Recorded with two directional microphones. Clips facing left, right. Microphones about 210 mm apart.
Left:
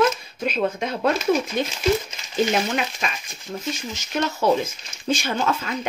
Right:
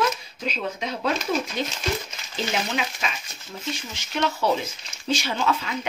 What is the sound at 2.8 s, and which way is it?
Speech, 55° left (ahead or behind).